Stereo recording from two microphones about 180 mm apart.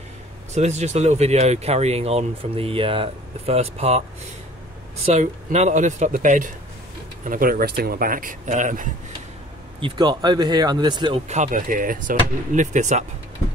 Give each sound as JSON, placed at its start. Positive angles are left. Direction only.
{"t": 0.5, "sound": "speech", "side_deg": -40}
{"t": 5.0, "sound": "speech", "side_deg": -40}
{"t": 9.8, "sound": "speech", "side_deg": -25}
{"t": 11.2, "sound": "speech", "side_deg": -40}